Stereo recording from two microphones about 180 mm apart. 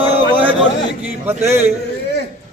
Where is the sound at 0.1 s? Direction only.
30° right (ahead or behind).